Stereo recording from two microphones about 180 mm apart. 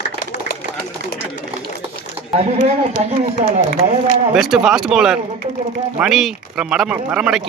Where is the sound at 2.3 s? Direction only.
35° right (ahead or behind).